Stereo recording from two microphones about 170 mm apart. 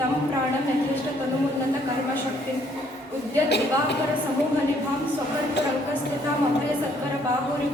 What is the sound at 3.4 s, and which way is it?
Speech, 90° left.